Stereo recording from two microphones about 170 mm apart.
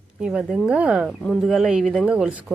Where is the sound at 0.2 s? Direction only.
5° right (ahead or behind).